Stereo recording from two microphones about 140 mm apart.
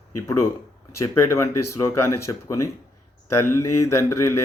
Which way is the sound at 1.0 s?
20° left (ahead or behind).